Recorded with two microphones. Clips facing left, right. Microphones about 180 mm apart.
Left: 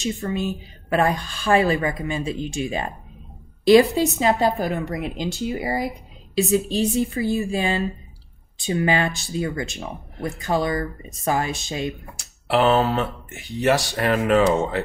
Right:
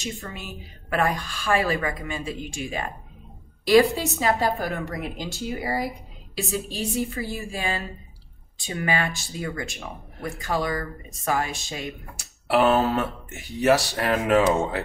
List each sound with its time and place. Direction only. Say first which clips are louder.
0.3 s a woman's voice: left 12 dB; 25° left (ahead or behind)
12.4 s speech: left 1 dB; centre (ahead or behind)